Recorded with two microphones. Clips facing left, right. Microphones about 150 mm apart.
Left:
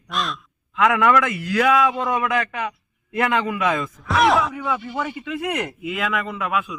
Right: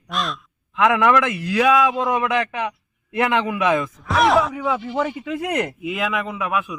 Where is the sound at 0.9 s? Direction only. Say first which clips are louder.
Right 1 dB; 15° right (ahead or behind).